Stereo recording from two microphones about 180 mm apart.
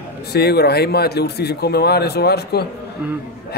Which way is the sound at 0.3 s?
65° left (ahead or behind).